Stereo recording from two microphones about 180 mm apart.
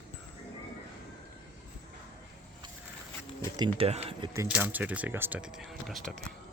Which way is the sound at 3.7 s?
35° right (ahead or behind).